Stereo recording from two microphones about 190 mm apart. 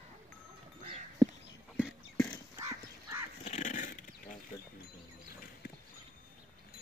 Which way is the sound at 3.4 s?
40° left (ahead or behind).